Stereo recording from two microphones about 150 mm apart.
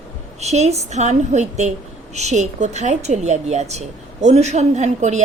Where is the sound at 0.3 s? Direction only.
50° right (ahead or behind).